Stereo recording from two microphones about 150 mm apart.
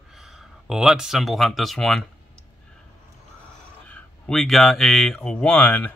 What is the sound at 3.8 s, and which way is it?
Speech, 10° left (ahead or behind).